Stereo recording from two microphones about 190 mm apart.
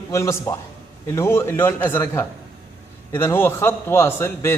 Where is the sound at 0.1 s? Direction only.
15° left (ahead or behind).